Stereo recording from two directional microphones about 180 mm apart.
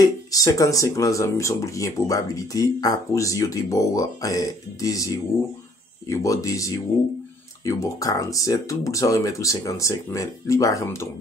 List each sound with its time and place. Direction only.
0.0 s speech: 20° left (ahead or behind)